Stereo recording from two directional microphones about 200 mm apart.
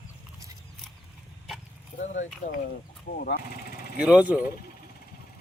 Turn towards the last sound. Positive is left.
turn(degrees=-5)  # may be behind; listen again after turning